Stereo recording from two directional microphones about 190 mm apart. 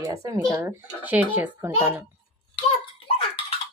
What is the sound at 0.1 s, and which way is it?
Speech, 15° right (ahead or behind).